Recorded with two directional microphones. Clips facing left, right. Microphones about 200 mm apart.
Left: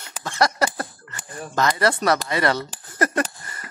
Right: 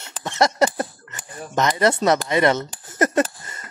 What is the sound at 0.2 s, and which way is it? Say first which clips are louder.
Speech: right 3 dB; 25° right (ahead or behind).